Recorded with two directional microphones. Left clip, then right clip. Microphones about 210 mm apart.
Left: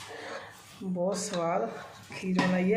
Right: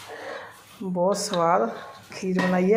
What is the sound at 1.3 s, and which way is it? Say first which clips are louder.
Speech: right 9 dB; 15° right (ahead or behind).